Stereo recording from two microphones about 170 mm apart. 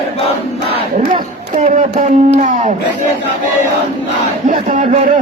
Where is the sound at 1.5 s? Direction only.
45° right (ahead or behind).